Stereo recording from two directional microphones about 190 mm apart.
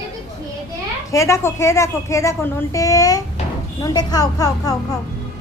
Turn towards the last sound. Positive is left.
turn(degrees=20)  # may be behind; listen again after turning